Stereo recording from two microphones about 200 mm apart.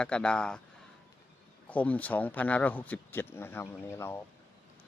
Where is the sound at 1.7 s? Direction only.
5° left (ahead or behind).